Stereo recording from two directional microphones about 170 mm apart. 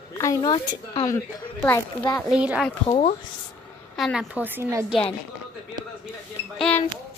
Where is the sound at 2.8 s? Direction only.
35° left (ahead or behind).